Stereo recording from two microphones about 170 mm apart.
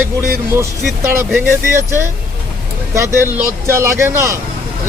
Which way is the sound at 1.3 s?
15° right (ahead or behind).